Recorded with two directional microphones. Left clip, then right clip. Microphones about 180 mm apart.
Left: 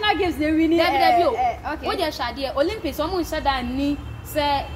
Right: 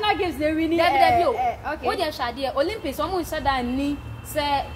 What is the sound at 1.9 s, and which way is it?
A woman's voice, 15° right (ahead or behind).